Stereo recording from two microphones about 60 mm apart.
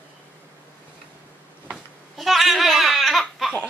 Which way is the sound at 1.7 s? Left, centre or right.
Centre.